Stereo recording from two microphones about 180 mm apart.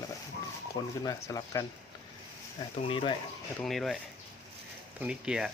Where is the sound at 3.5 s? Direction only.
Centre (ahead or behind).